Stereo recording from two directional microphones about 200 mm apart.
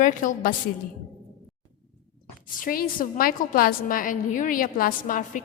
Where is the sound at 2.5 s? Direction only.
45° left (ahead or behind).